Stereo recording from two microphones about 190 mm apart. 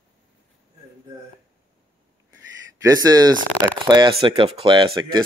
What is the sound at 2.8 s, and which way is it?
Speech, 20° right (ahead or behind).